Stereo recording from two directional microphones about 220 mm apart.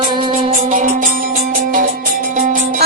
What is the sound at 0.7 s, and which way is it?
Music, 35° right (ahead or behind).